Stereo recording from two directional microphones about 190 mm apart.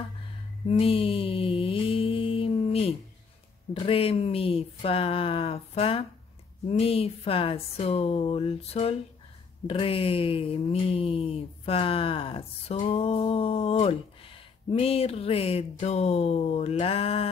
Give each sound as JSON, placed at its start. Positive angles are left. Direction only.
{"t": 0.7, "sound": "mantra", "side_deg": 30}
{"t": 3.8, "sound": "speech", "side_deg": 30}